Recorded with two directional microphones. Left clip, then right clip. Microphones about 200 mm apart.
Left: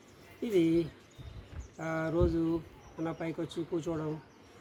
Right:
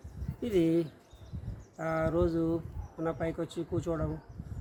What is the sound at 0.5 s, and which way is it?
Speech, 25° right (ahead or behind).